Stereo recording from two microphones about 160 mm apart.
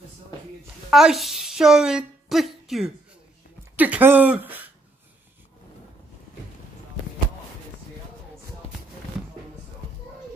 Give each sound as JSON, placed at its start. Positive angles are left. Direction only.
{"t": 0.8, "sound": "a woman's voice", "side_deg": -5}